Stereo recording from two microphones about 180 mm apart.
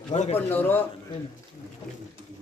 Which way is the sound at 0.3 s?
10° left (ahead or behind).